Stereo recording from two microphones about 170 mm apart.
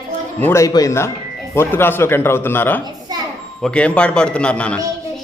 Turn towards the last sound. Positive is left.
turn(degrees=5)  # may be behind; listen again after turning